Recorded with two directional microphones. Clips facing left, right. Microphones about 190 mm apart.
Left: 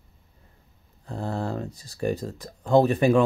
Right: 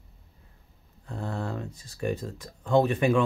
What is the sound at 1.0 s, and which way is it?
Speech, 35° left (ahead or behind).